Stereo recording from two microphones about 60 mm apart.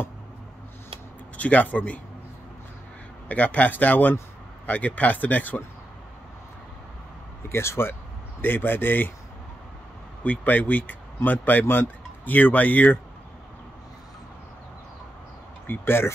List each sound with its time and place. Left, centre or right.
1.3 s speech: left
3.3 s speech: left
7.4 s speech: left
8.4 s speech: left
10.2 s speech: left
15.6 s speech: left